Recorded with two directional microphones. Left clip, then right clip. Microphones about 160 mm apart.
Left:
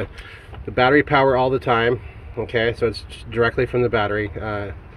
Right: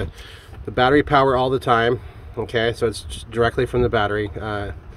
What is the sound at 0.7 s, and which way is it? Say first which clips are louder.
Speech: even; 20° right (ahead or behind).